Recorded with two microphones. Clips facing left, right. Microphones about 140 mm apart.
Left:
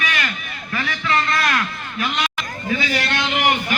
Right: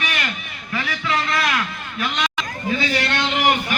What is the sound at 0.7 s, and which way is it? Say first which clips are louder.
Speech: left 1 dB; 5° right (ahead or behind).